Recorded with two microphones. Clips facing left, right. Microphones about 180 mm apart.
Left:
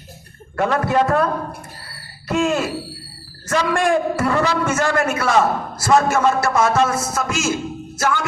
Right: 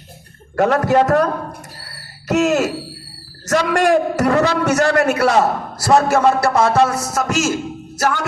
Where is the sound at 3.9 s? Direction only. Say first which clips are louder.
Right 3 dB; 40° right (ahead or behind).